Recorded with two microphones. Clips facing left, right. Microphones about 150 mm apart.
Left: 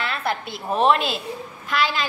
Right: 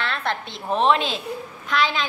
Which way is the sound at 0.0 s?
5° left (ahead or behind).